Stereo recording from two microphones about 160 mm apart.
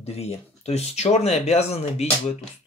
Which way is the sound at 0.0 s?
40° left (ahead or behind).